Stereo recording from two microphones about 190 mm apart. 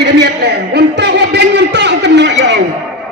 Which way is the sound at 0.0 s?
60° right (ahead or behind).